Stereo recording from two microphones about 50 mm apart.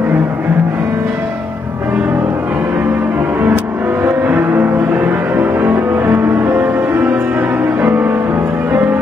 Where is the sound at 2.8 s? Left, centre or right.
Right.